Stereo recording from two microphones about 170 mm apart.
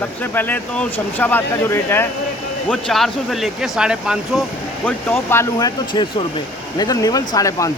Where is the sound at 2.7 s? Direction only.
5° left (ahead or behind).